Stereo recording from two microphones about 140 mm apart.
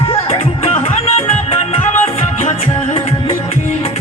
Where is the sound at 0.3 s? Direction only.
45° left (ahead or behind).